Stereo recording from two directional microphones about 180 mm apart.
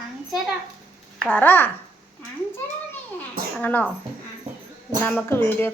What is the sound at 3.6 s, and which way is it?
Speech, 10° left (ahead or behind).